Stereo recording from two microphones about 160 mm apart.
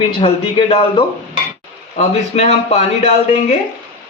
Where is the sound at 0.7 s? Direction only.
35° left (ahead or behind).